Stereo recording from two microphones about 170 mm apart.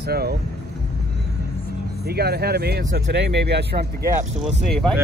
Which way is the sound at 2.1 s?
70° right (ahead or behind).